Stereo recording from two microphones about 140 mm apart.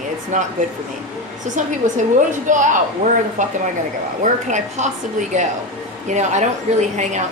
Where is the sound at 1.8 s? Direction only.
65° right (ahead or behind).